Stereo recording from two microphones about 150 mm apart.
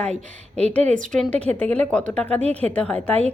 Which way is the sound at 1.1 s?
5° left (ahead or behind).